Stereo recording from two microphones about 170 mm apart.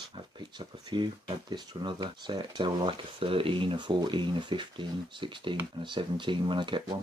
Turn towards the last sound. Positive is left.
turn(degrees=-30)  # may be behind; listen again after turning